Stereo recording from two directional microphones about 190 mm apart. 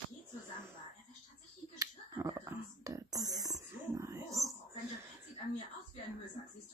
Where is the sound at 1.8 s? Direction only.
15° right (ahead or behind).